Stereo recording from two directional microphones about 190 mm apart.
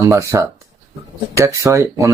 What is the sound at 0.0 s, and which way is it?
Speech, 15° right (ahead or behind).